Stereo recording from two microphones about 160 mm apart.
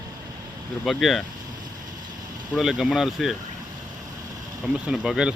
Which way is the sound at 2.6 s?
Centre (ahead or behind).